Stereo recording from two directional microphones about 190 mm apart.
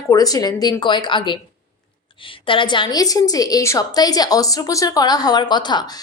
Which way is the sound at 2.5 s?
25° left (ahead or behind).